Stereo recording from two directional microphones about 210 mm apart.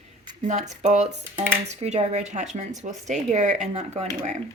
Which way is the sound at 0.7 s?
30° right (ahead or behind).